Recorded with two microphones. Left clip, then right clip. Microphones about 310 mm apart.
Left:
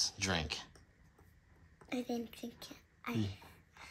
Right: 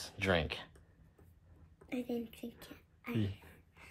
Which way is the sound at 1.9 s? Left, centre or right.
Left.